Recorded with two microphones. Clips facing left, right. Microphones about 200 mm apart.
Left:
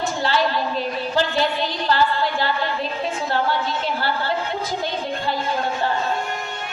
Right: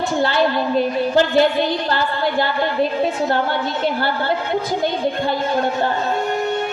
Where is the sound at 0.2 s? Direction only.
55° right (ahead or behind).